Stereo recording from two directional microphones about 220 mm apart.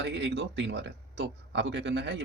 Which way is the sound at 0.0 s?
55° right (ahead or behind).